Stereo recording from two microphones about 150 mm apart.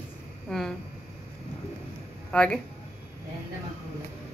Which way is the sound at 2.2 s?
5° left (ahead or behind).